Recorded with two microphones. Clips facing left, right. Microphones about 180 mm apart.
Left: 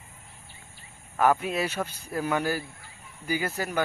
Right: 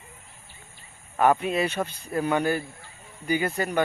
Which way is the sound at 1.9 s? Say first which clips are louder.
Right 2 dB; 60° right (ahead or behind).